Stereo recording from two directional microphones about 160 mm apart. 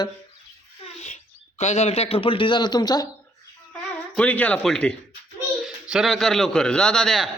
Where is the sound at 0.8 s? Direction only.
45° left (ahead or behind).